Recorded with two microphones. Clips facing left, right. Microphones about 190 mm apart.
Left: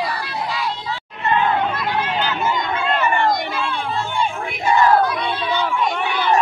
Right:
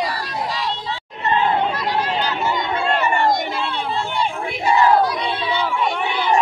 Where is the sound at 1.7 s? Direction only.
35° right (ahead or behind).